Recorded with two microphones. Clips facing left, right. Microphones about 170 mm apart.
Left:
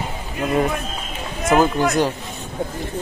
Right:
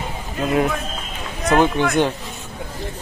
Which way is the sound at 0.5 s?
Centre (ahead or behind).